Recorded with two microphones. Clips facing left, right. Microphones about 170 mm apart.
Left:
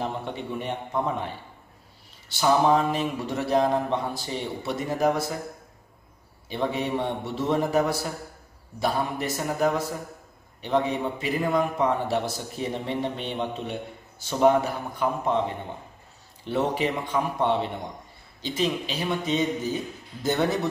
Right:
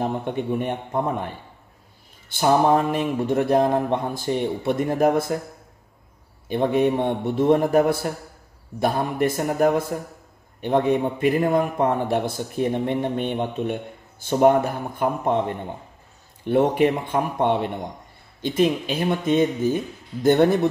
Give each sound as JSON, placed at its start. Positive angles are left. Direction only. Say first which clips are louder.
{"t": 0.0, "sound": "a man's voice", "louder": "right 6 dB", "side_deg": -50}
{"t": 6.5, "sound": "a man's voice", "louder": "right 7 dB", "side_deg": -50}